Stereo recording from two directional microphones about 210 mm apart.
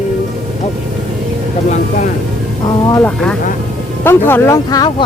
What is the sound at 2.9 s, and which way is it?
Speech, 5° left (ahead or behind).